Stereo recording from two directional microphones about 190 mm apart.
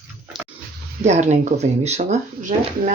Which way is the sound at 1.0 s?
40° right (ahead or behind).